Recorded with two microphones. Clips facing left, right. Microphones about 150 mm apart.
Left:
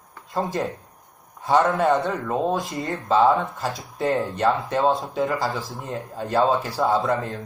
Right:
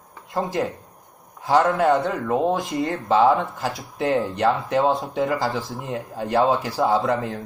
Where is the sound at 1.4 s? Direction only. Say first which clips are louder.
Right 1 dB; 5° right (ahead or behind).